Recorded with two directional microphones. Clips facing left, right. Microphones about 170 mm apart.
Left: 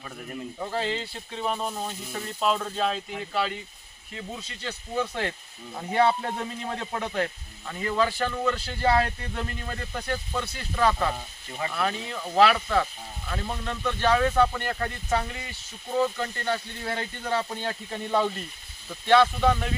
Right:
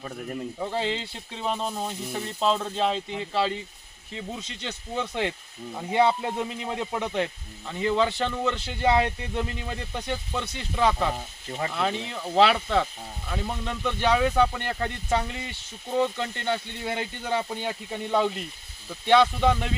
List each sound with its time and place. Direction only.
0.7 s speech: 20° right (ahead or behind)